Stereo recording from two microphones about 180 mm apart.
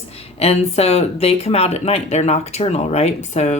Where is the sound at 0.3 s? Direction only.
35° left (ahead or behind).